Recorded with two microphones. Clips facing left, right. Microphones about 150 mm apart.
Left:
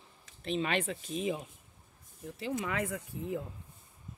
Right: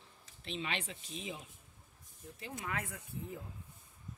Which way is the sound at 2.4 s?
90° left.